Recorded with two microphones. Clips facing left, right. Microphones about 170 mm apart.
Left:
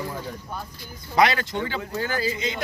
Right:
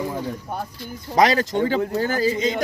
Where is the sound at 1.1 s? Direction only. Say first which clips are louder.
Right 3 dB; 40° right (ahead or behind).